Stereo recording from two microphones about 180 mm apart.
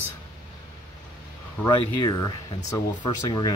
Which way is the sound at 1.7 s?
25° left (ahead or behind).